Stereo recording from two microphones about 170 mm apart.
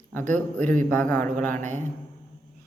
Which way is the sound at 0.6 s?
50° right (ahead or behind).